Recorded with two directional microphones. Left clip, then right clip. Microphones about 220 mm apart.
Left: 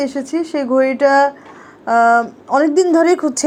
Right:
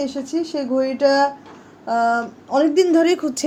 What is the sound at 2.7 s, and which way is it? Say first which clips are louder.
Speech: left 2 dB; 15° left (ahead or behind).